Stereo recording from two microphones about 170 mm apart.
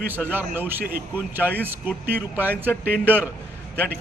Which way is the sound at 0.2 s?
10° right (ahead or behind).